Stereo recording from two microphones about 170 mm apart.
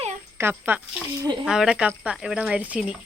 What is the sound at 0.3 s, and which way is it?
Speech, 10° right (ahead or behind).